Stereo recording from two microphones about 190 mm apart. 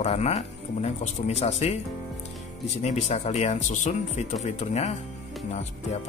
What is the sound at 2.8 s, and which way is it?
Speech, 35° left (ahead or behind).